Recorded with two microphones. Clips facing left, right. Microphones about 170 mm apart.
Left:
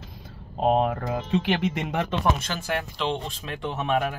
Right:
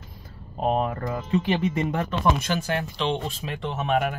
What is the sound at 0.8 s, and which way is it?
Speech, 85° left.